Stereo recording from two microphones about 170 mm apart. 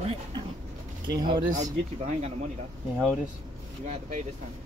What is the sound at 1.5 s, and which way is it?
Speech, 45° right (ahead or behind).